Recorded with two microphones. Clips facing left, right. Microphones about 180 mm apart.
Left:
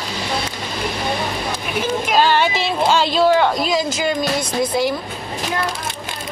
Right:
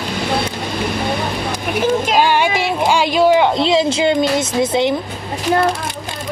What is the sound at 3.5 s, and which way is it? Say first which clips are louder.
A woman's voice: right 5 dB; 25° right (ahead or behind).